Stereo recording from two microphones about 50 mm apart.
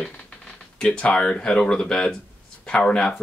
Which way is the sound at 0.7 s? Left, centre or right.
Centre.